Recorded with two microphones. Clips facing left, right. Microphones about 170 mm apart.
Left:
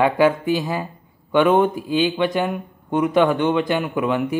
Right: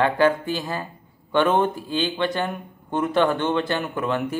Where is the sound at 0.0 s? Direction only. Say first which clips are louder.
Left 3 dB; 15° left (ahead or behind).